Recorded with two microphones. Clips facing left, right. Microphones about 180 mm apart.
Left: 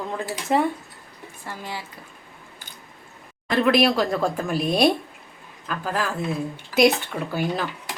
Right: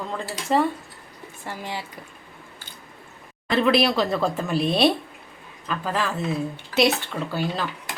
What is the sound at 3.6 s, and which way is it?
Speech, 5° left (ahead or behind).